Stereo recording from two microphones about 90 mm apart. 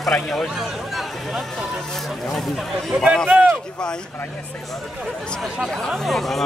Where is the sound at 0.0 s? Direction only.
Centre (ahead or behind).